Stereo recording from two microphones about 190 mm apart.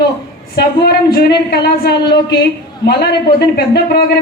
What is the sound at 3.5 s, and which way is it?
Speech, 55° left (ahead or behind).